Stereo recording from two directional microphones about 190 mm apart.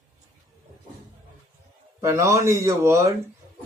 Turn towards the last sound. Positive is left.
turn(degrees=-15)  # may be behind; listen again after turning